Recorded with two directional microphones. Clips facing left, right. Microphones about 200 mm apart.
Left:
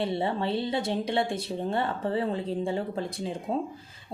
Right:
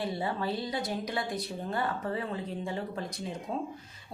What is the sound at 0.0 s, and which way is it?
Speech, 25° left (ahead or behind).